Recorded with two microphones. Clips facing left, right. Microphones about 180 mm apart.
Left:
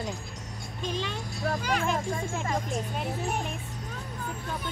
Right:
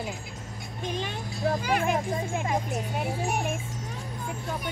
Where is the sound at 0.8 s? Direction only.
55° right (ahead or behind).